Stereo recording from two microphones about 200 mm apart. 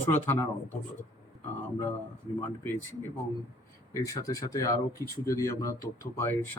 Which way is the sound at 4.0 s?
15° left (ahead or behind).